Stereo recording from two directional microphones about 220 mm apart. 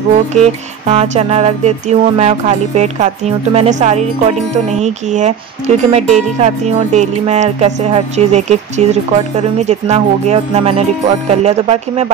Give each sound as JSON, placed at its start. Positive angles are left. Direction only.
{"t": 0.4, "sound": "music", "side_deg": -30}
{"t": 9.7, "sound": "speech", "side_deg": -30}